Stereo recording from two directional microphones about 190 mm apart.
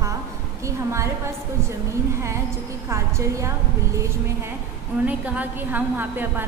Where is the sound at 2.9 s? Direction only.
15° right (ahead or behind).